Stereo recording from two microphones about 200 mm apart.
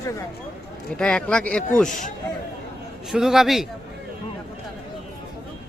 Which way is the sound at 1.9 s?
40° left (ahead or behind).